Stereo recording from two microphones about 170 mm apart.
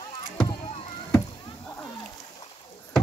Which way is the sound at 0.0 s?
25° left (ahead or behind).